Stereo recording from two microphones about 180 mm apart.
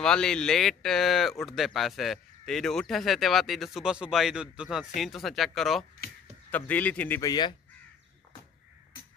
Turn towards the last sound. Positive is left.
turn(degrees=25)  # may be behind; listen again after turning